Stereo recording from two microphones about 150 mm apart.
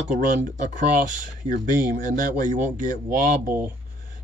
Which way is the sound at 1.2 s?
65° right (ahead or behind).